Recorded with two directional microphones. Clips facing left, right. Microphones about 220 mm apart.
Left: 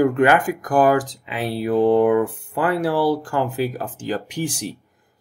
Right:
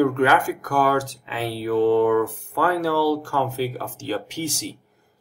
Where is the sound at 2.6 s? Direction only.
15° left (ahead or behind).